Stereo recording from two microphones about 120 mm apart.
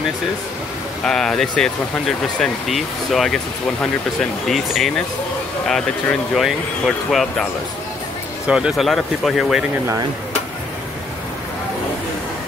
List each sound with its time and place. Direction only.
1.0 s speech: 5° left (ahead or behind)
8.5 s speech: 5° right (ahead or behind)